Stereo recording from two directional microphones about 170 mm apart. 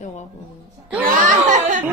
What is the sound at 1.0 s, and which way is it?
Speech, 45° right (ahead or behind).